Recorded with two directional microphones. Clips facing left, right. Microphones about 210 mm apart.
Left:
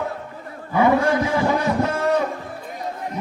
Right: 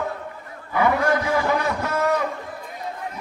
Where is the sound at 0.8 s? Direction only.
20° left (ahead or behind).